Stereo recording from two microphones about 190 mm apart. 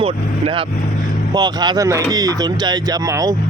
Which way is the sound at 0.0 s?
30° right (ahead or behind).